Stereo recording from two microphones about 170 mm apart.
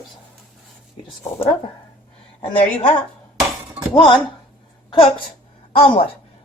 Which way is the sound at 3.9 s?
30° left (ahead or behind).